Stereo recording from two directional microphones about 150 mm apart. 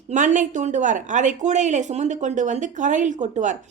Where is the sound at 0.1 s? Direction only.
55° right (ahead or behind).